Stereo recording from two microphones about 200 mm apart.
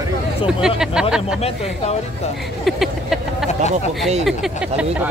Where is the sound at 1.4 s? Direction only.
30° left (ahead or behind).